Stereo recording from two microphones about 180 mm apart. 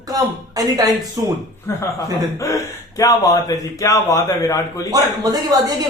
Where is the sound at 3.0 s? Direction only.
20° left (ahead or behind).